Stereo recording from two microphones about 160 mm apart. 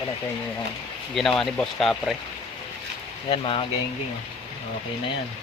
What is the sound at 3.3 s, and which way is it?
Speech, 35° left (ahead or behind).